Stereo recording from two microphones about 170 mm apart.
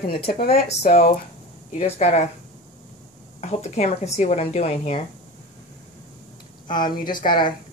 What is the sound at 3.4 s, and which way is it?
A woman's voice, 40° left (ahead or behind).